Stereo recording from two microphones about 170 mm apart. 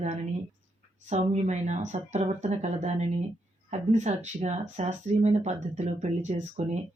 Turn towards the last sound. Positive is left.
turn(degrees=-45)  # may be behind; listen again after turning